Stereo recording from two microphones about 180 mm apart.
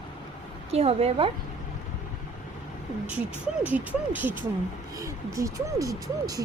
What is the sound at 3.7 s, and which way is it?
Speech, 10° right (ahead or behind).